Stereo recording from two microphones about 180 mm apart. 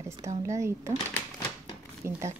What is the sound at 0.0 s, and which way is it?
Speech, 15° right (ahead or behind).